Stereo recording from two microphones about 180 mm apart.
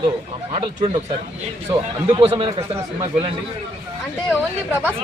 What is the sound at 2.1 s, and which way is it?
Speech, 30° right (ahead or behind).